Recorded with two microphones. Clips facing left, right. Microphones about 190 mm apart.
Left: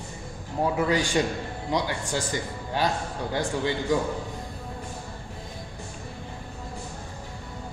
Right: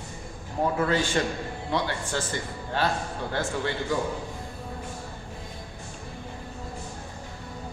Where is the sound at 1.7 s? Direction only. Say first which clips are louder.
Left 1 dB; 15° left (ahead or behind).